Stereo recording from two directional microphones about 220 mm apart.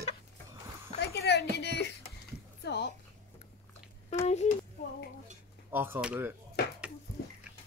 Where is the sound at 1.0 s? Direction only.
50° left (ahead or behind).